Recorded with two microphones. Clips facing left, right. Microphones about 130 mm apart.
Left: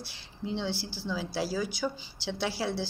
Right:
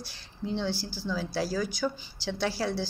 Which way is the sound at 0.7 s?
65° left (ahead or behind).